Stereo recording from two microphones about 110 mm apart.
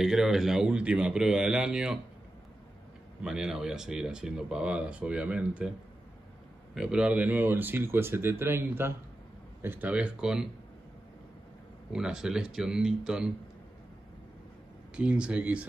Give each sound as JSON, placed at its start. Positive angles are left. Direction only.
{"t": 0.0, "sound": "speech", "side_deg": -5}
{"t": 3.2, "sound": "speech", "side_deg": -5}
{"t": 6.7, "sound": "speech", "side_deg": -5}
{"t": 11.9, "sound": "speech", "side_deg": -5}
{"t": 15.0, "sound": "speech", "side_deg": -10}